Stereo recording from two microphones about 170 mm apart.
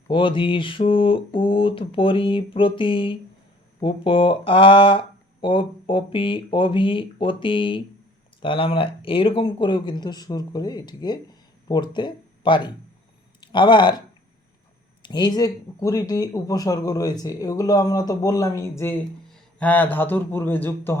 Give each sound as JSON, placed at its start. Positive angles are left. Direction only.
{"t": 0.1, "sound": "speech", "side_deg": 30}
{"t": 15.0, "sound": "a man's voice", "side_deg": 25}